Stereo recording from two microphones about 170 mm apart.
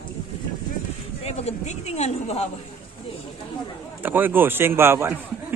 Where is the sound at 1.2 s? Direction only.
40° left (ahead or behind).